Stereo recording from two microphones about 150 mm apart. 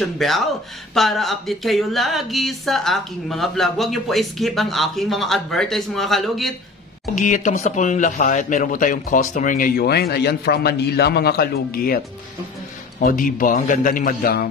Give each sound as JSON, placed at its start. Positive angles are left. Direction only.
{"t": 0.2, "sound": "speech", "side_deg": 0}
{"t": 7.2, "sound": "speech", "side_deg": 55}
{"t": 13.0, "sound": "a man's voice", "side_deg": 65}